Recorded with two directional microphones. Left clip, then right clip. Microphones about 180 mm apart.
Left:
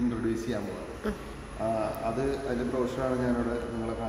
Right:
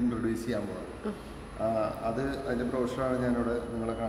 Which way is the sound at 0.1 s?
10° right (ahead or behind).